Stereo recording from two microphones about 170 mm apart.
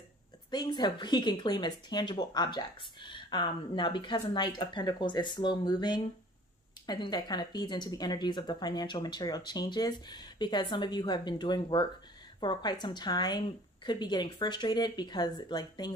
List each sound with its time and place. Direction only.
0.5 s speech: 25° left (ahead or behind)